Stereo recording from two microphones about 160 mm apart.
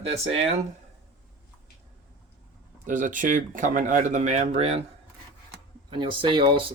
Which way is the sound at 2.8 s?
55° right (ahead or behind).